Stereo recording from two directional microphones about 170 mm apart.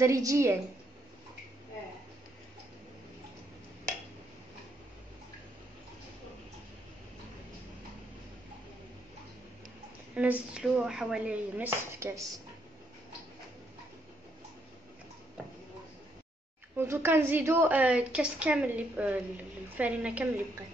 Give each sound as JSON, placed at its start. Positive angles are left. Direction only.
{"t": 0.0, "sound": "a woman's voice", "side_deg": -20}
{"t": 10.1, "sound": "a woman's voice", "side_deg": -10}
{"t": 16.7, "sound": "a woman's voice", "side_deg": -15}